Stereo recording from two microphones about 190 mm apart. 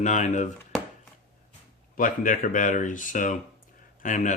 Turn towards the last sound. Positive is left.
turn(degrees=40)  # may be behind; listen again after turning